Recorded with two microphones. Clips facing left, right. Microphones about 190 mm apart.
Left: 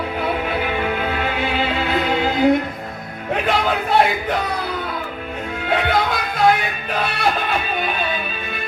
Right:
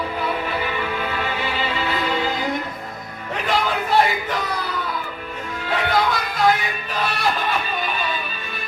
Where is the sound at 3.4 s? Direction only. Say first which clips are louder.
Left 1 dB; 60° left (ahead or behind).